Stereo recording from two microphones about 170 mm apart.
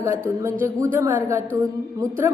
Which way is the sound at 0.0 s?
15° right (ahead or behind).